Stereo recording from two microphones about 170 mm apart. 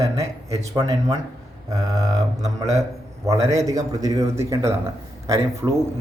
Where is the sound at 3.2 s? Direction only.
20° right (ahead or behind).